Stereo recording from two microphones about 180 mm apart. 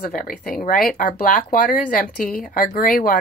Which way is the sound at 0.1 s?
50° left (ahead or behind).